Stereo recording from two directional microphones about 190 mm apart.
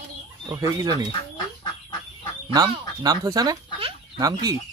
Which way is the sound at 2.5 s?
20° right (ahead or behind).